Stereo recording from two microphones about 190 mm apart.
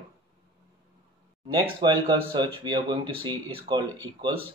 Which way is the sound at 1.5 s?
25° right (ahead or behind).